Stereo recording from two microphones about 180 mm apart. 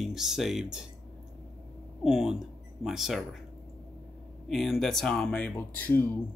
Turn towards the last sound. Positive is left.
turn(degrees=10)  # may be behind; listen again after turning